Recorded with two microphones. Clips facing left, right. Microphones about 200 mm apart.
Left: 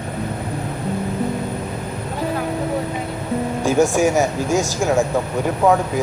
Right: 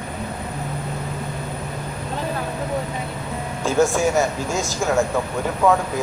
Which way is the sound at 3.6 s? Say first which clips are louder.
Left 2 dB; 15° left (ahead or behind).